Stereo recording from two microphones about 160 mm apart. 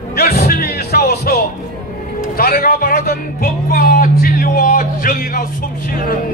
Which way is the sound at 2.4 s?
70° left (ahead or behind).